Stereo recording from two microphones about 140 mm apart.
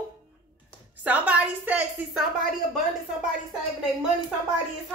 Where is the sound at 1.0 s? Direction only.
10° right (ahead or behind).